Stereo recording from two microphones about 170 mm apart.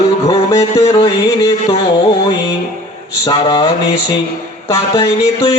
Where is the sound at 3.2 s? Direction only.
25° left (ahead or behind).